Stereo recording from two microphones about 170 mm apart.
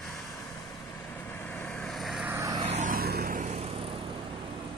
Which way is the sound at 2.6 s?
45° right (ahead or behind).